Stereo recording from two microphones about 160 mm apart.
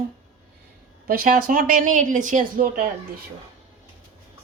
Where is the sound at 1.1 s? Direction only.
65° right (ahead or behind).